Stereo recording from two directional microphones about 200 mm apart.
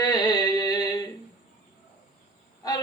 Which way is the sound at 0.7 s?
20° left (ahead or behind).